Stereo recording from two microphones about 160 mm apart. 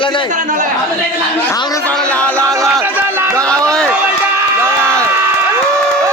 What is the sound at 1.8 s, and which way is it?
Speech, 5° left (ahead or behind).